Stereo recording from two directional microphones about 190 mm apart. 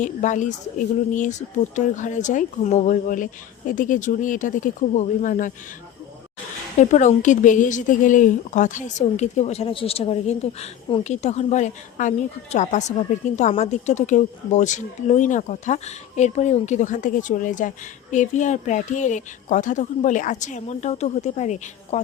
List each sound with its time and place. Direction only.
0.0 s a woman's voice: 40° left (ahead or behind)
6.7 s a woman's voice: 40° left (ahead or behind)